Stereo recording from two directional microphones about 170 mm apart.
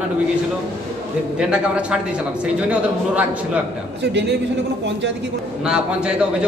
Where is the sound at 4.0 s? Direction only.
90° right.